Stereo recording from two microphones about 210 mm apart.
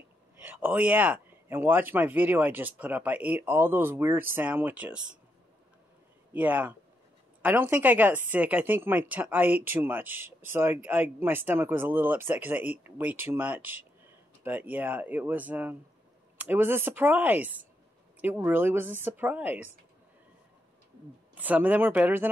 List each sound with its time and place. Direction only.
0.4 s speech: 10° right (ahead or behind)
6.3 s speech: 5° right (ahead or behind)
21.4 s speech: 10° right (ahead or behind)